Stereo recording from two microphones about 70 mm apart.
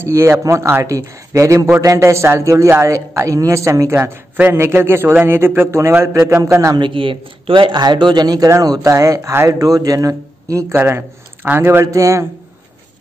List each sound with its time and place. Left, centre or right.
0.0 s a man's voice: right
7.7 s speech: right
8.9 s a man's voice: right
10.7 s a man's voice: right
11.9 s speech: right